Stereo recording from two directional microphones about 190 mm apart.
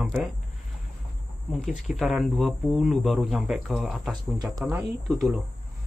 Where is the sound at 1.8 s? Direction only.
Centre (ahead or behind).